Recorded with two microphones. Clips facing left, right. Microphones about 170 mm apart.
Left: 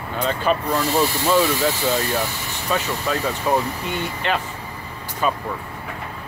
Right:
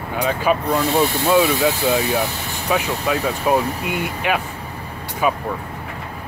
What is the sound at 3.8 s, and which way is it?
Speech, 10° right (ahead or behind).